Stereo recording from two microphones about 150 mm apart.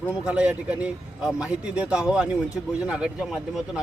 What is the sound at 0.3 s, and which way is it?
A man's voice, 10° right (ahead or behind).